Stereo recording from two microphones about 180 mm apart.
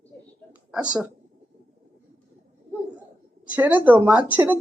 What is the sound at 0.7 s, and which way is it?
Speech, 5° right (ahead or behind).